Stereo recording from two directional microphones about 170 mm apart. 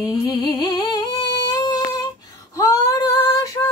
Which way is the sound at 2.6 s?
20° left (ahead or behind).